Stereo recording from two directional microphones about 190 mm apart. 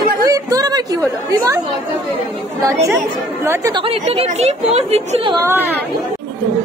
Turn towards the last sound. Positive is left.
turn(degrees=-35)  # may be behind; listen again after turning